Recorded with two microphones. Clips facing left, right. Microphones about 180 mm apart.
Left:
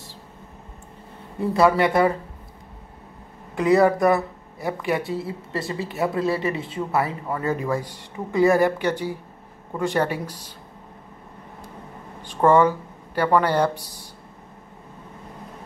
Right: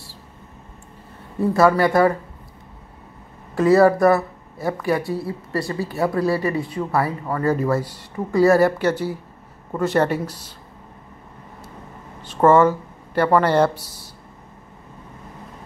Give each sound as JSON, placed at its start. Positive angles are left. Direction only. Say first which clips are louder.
{"t": 1.5, "sound": "speech", "louder": "right 2 dB", "side_deg": 20}
{"t": 3.5, "sound": "speech", "louder": "right 3 dB", "side_deg": 20}
{"t": 12.4, "sound": "speech", "louder": "right 2 dB", "side_deg": 15}